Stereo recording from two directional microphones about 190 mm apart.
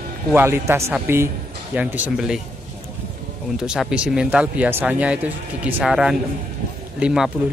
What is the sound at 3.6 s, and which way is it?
Speech, 5° right (ahead or behind).